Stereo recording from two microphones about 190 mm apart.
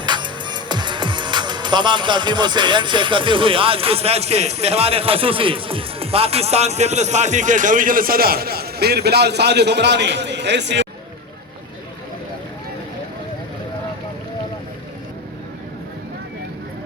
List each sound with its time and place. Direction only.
0.0 s speech: 25° right (ahead or behind); by 10.8 s 65° right (ahead or behind)